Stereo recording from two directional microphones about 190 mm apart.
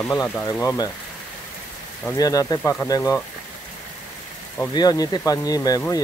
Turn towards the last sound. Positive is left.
turn(degrees=20)  # may be behind; listen again after turning